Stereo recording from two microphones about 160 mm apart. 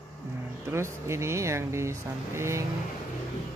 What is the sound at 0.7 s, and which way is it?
Speech, 15° right (ahead or behind).